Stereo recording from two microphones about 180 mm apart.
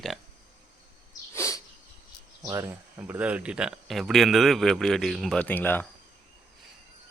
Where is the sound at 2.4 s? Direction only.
15° right (ahead or behind); by 5.8 s 10° left (ahead or behind).